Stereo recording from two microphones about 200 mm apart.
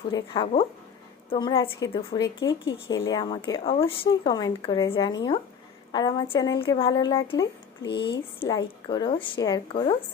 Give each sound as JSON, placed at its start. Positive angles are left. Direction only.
{"t": 0.1, "sound": "speech", "side_deg": 25}